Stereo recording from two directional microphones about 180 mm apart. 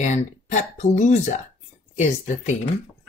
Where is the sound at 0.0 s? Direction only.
40° left (ahead or behind).